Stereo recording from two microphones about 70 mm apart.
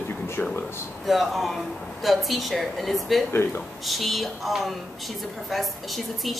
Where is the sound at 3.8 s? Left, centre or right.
Centre.